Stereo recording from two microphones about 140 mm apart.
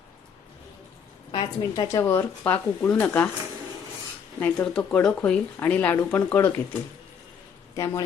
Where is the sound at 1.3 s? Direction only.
35° left (ahead or behind); by 3.2 s 15° left (ahead or behind).